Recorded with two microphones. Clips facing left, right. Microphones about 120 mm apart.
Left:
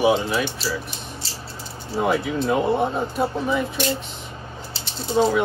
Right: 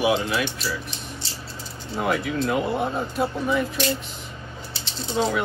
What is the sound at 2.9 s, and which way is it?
Speech, centre (ahead or behind).